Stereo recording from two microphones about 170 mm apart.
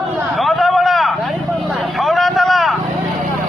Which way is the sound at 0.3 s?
Centre (ahead or behind).